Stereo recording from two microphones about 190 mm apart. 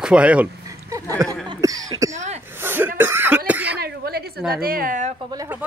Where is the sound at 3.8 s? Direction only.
55° right (ahead or behind).